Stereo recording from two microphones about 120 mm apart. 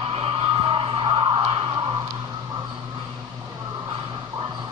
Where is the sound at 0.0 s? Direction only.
50° right (ahead or behind).